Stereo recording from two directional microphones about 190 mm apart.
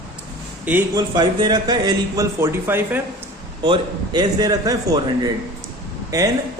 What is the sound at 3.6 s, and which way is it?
Speech, 25° right (ahead or behind).